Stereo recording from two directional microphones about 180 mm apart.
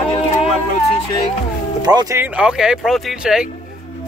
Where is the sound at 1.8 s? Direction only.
20° right (ahead or behind).